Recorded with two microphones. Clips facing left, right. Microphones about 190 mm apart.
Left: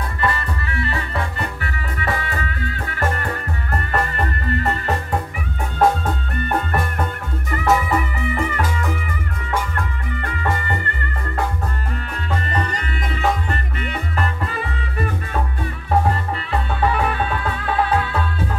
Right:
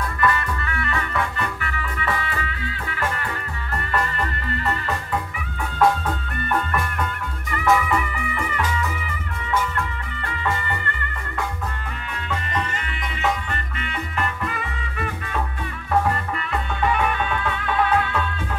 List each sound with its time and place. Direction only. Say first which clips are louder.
0.2 s music: right 1 dB; 30° left (ahead or behind)
6.5 s music: left 2 dB; 35° left (ahead or behind)
16.5 s music: left 2 dB; 35° left (ahead or behind)